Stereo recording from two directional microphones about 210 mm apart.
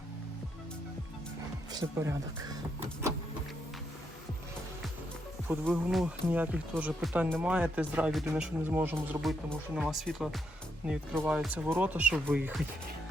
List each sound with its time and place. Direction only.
1.7 s speech: 15° right (ahead or behind)
5.5 s speech: 10° right (ahead or behind)
9.5 s speech: centre (ahead or behind)